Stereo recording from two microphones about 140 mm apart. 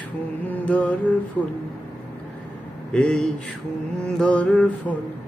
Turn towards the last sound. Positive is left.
turn(degrees=5)  # may be behind; listen again after turning